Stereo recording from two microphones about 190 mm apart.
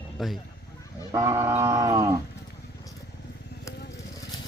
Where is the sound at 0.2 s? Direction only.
Centre (ahead or behind).